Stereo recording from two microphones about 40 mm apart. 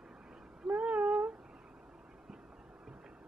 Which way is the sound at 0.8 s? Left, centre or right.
Right.